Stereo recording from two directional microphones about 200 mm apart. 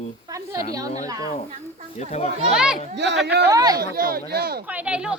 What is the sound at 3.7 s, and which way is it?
Speech, 50° right (ahead or behind).